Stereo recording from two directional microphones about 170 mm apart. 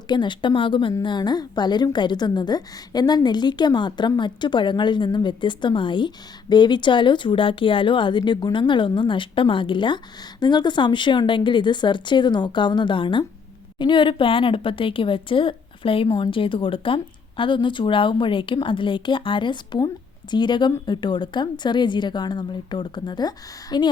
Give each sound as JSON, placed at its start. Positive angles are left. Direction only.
{"t": 0.1, "sound": "a woman's voice", "side_deg": 25}